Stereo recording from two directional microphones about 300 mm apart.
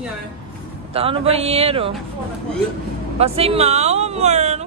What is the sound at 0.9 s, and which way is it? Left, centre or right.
Speech, centre.